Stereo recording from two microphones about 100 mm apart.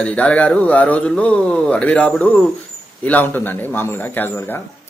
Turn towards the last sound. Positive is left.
turn(degrees=20)  # may be behind; listen again after turning